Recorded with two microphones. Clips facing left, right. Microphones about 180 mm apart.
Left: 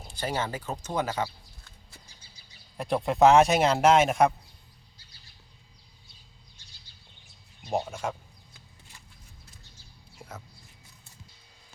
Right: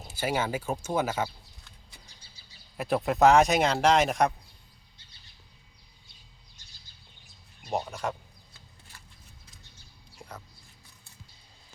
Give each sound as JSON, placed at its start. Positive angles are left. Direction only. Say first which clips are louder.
{"t": 0.0, "sound": "speech", "louder": "right 2 dB", "side_deg": -5}
{"t": 2.7, "sound": "speech", "louder": "even", "side_deg": -5}
{"t": 7.7, "sound": "speech", "louder": "left 1 dB", "side_deg": 0}
{"t": 10.2, "sound": "whispering", "louder": "left 1 dB", "side_deg": 5}